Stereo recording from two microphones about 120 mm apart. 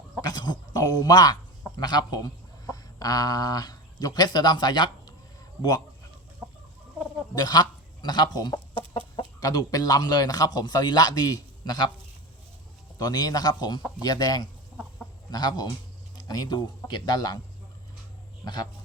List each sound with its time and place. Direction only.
0.2 s speech: 35° left (ahead or behind)
6.4 s chicken: 5° right (ahead or behind)
7.3 s a man's voice: 35° left (ahead or behind)
8.9 s chicken: 45° left (ahead or behind)
9.4 s speech: 30° left (ahead or behind)
13.0 s speech: 35° left (ahead or behind)
18.4 s speech: 35° left (ahead or behind)